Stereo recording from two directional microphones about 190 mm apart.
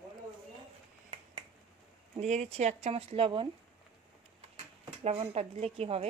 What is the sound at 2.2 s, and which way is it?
Speech, 35° right (ahead or behind).